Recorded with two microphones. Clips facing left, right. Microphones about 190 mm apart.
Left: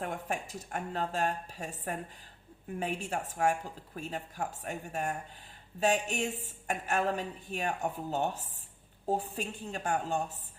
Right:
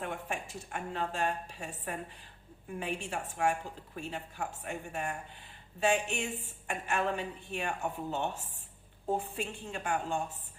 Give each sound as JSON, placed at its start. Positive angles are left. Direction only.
{"t": 0.0, "sound": "a woman's voice", "side_deg": 40}